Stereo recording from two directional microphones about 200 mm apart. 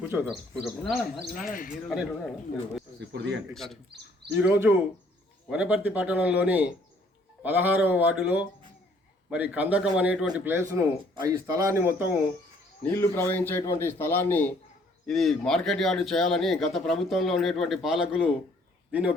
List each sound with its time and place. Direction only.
0.1 s speech: 5° right (ahead or behind)
1.4 s speech: 40° left (ahead or behind)
1.9 s speech: centre (ahead or behind)
3.0 s speech: 55° right (ahead or behind)
3.5 s speech: centre (ahead or behind)
4.3 s a man's voice: 10° right (ahead or behind)
12.8 s a man's voice: 10° left (ahead or behind); by 19.1 s 5° right (ahead or behind)